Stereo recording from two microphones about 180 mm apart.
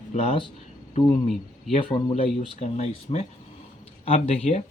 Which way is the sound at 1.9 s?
25° left (ahead or behind).